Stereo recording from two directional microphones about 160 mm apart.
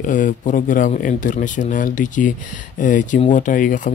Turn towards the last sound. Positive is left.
turn(degrees=55)  # may be behind; listen again after turning